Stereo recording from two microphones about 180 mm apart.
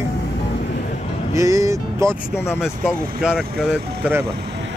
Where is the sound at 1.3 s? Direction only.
15° right (ahead or behind).